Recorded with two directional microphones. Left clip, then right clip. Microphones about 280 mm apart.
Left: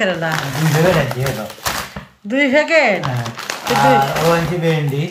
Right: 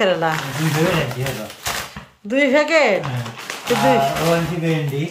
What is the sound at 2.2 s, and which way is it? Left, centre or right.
Speech, centre.